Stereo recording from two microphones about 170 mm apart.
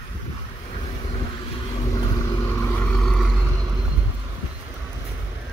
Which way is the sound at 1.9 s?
15° left (ahead or behind).